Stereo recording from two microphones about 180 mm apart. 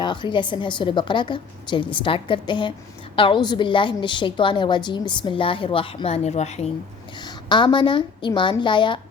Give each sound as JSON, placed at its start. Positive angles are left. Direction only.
{"t": 0.0, "sound": "a woman's voice", "side_deg": 25}
{"t": 7.2, "sound": "a woman's voice", "side_deg": 25}